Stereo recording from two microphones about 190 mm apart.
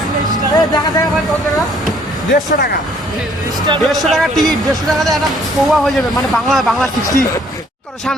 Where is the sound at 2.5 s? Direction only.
55° left (ahead or behind).